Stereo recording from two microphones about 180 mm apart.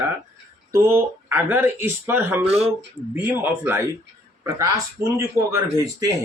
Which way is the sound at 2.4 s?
35° right (ahead or behind).